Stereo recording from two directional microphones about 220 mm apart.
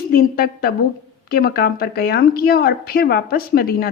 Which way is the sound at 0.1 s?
45° left (ahead or behind).